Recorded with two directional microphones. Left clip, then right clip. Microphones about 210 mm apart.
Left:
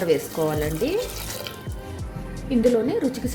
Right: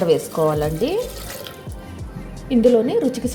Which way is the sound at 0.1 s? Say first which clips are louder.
Right 2 dB; 15° right (ahead or behind).